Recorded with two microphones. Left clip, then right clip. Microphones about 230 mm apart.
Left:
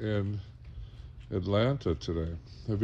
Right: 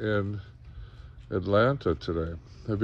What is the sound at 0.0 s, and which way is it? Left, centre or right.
Speech, right.